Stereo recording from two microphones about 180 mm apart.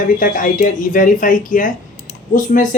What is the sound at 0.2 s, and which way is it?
Speech, 50° left (ahead or behind).